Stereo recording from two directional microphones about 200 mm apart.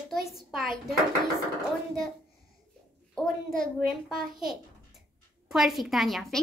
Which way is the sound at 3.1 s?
5° left (ahead or behind).